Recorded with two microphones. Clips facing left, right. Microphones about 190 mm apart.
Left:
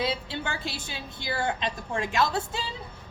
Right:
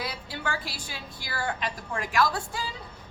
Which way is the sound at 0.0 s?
25° left (ahead or behind).